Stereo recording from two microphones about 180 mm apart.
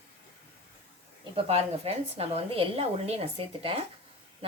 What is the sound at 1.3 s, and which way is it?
A woman's voice, 30° right (ahead or behind).